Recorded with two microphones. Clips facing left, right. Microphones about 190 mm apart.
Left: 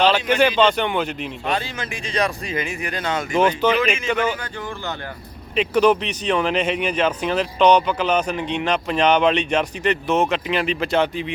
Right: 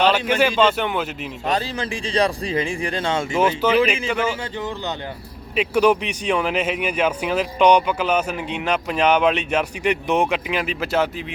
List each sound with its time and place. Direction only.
0.1 s speech: 5° right (ahead or behind)
1.5 s speech: 35° right (ahead or behind)
3.3 s speech: 5° right (ahead or behind)
3.8 s speech: 30° right (ahead or behind)
4.1 s speech: 10° right (ahead or behind)
5.5 s speech: 10° right (ahead or behind)